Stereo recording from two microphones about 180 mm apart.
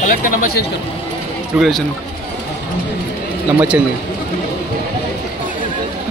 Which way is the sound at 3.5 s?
5° right (ahead or behind).